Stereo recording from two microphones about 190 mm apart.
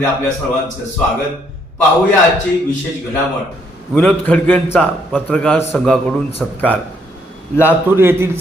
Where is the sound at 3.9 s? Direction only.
10° left (ahead or behind).